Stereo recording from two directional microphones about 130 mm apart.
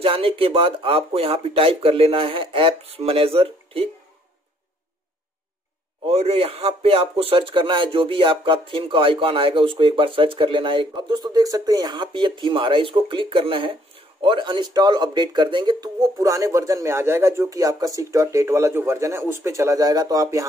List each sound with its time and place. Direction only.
0.0 s speech: 45° right (ahead or behind)
6.0 s speech: 50° right (ahead or behind); by 20.4 s 25° right (ahead or behind)